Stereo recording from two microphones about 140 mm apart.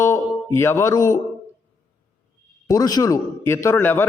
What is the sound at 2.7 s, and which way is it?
Speech, 25° left (ahead or behind).